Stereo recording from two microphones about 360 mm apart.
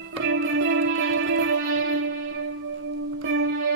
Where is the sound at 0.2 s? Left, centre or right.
Right.